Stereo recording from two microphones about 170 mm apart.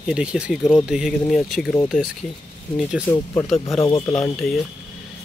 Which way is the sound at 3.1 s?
10° left (ahead or behind).